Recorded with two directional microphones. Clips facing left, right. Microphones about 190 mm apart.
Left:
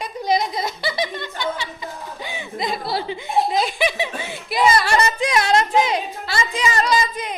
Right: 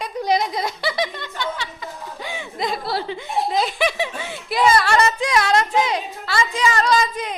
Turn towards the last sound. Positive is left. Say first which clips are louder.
# right 1 dB
turn(degrees=10)  # may be behind; listen again after turning